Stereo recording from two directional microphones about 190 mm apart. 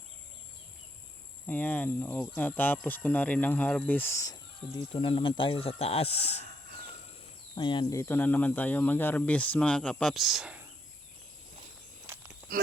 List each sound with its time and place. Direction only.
1.5 s speech: 10° left (ahead or behind); by 6.4 s 30° left (ahead or behind)
7.5 s speech: 25° left (ahead or behind); by 10.7 s 5° right (ahead or behind)